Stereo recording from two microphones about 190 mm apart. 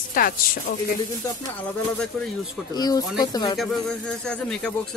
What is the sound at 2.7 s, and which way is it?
Speech, 20° left (ahead or behind).